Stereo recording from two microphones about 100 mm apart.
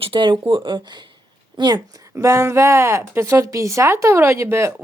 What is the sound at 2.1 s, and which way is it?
A woman's voice, 25° right (ahead or behind).